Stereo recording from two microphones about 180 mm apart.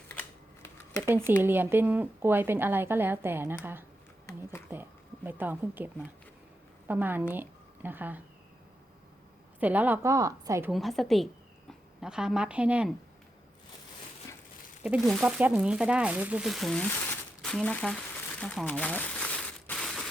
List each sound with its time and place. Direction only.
0.1 s a sound: 10° left (ahead or behind)
1.4 s speech: 10° right (ahead or behind)
9.6 s speech: 10° right (ahead or behind)
10.7 s speech: centre (ahead or behind)
14.8 s speech: centre (ahead or behind)
17.4 s crumpling: 5° left (ahead or behind)